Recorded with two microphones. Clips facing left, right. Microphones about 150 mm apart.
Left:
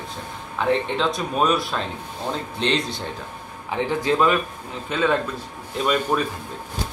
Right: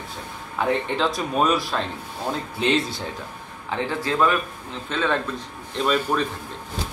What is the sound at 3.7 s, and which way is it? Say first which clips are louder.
A man's voice: left 3 dB; 15° left (ahead or behind).